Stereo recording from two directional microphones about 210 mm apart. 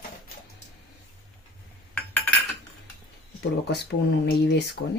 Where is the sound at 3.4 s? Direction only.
50° left (ahead or behind).